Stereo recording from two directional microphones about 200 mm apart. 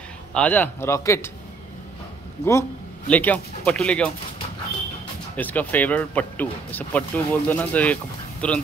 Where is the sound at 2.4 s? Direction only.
55° left (ahead or behind).